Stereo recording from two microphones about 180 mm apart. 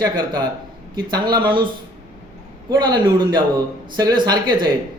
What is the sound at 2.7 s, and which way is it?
A man's voice, 25° right (ahead or behind).